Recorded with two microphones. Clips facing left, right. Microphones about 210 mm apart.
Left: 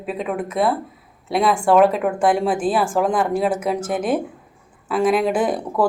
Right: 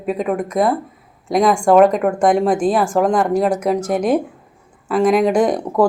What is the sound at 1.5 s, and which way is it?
Speech, 5° left (ahead or behind).